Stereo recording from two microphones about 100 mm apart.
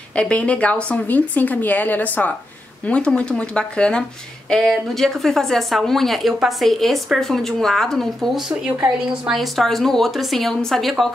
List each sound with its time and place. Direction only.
0.1 s speech: 10° left (ahead or behind)